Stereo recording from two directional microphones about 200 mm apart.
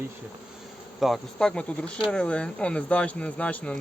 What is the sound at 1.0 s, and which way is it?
Speech, centre (ahead or behind).